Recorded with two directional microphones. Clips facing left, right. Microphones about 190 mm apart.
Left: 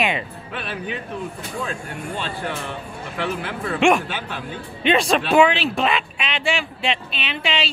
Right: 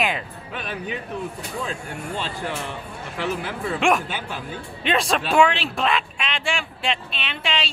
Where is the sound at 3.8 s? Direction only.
Centre (ahead or behind).